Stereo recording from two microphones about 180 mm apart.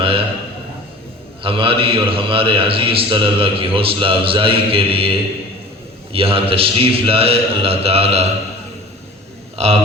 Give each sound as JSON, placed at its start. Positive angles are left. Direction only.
{"t": 0.0, "sound": "a sound", "side_deg": -30}
{"t": 1.4, "sound": "a man's voice", "side_deg": -30}
{"t": 9.6, "sound": "a man's voice", "side_deg": -35}